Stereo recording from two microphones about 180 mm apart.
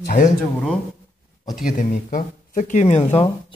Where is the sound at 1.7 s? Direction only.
50° left (ahead or behind).